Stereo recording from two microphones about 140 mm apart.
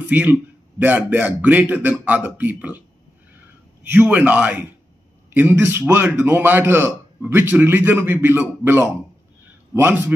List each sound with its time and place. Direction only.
0.1 s a man's voice: 15° right (ahead or behind)
3.8 s a man's voice: 15° right (ahead or behind)